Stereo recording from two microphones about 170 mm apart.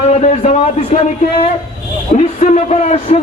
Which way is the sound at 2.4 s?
40° left (ahead or behind).